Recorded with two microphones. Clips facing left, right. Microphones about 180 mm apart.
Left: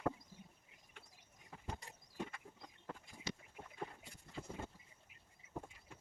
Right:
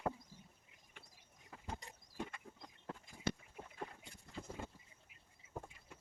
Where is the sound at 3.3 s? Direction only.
55° right (ahead or behind).